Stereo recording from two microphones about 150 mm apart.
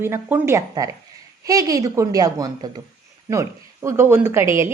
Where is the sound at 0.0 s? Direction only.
15° right (ahead or behind).